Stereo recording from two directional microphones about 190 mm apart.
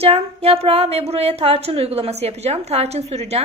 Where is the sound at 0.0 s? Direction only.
30° right (ahead or behind).